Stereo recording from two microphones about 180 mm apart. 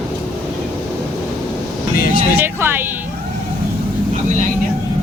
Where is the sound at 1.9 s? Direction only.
55° left (ahead or behind).